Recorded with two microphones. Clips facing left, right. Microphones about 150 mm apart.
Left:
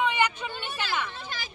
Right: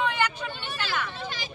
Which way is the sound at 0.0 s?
15° left (ahead or behind).